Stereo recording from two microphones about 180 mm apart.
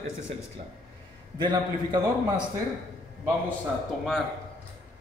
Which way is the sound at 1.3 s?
25° right (ahead or behind).